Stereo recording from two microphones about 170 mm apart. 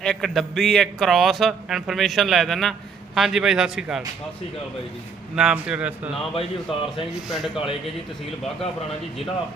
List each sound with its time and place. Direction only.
0.0 s a man's voice: 5° left (ahead or behind)
5.4 s a man's voice: 5° right (ahead or behind)
6.3 s a man's voice: 30° left (ahead or behind)
7.3 s a man's voice: centre (ahead or behind)